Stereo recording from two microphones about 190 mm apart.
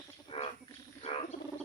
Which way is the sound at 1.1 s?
35° left (ahead or behind).